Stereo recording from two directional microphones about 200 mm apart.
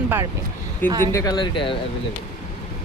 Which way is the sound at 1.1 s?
20° left (ahead or behind).